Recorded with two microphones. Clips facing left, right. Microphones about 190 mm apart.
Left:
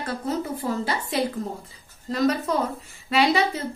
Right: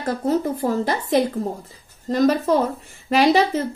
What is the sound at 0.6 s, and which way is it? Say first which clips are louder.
Speech: right 5 dB; 45° right (ahead or behind).